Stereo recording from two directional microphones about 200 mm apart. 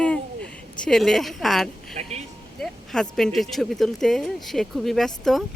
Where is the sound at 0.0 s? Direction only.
5° left (ahead or behind).